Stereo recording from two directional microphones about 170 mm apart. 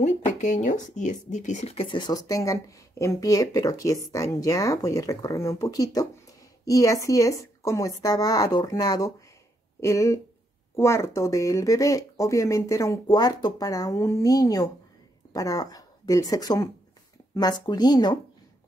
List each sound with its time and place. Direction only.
0.0 s speech: 45° left (ahead or behind); by 18.2 s 25° left (ahead or behind)